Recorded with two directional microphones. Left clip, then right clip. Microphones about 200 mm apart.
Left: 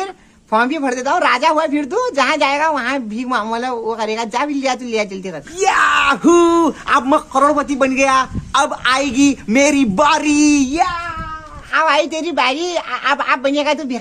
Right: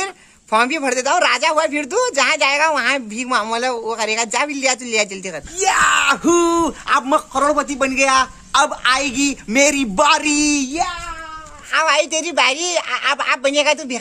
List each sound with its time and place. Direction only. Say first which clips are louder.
0.0 s a man's voice: even; 20° right (ahead or behind)
5.6 s speech: left 2 dB; centre (ahead or behind)
11.7 s a woman's voice: left 1 dB; 15° right (ahead or behind)